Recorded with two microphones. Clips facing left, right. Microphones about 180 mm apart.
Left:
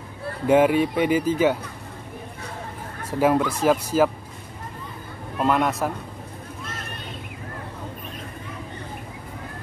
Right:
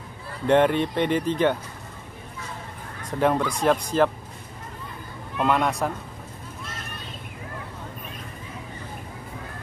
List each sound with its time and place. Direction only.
0.5 s speech: 5° left (ahead or behind)
3.1 s speech: 5° left (ahead or behind)
5.4 s speech: centre (ahead or behind)